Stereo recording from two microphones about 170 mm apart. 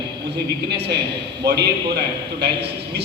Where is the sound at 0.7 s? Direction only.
75° right (ahead or behind).